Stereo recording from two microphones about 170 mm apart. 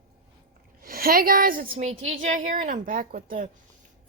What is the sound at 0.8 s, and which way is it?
Speech, 60° right (ahead or behind).